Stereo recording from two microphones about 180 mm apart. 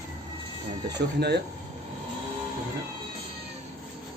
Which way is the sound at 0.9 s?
70° right (ahead or behind).